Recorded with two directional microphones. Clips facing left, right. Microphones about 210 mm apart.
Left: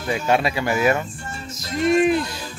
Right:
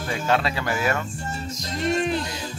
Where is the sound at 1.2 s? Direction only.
40° right (ahead or behind).